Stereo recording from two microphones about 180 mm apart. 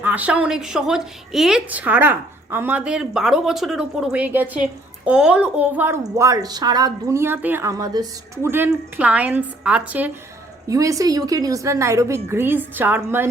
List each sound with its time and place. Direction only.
0.0 s a woman's voice: 10° right (ahead or behind)
10.7 s a woman's voice: 20° right (ahead or behind)